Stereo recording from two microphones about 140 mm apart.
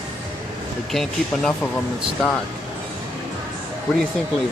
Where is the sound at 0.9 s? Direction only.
5° left (ahead or behind).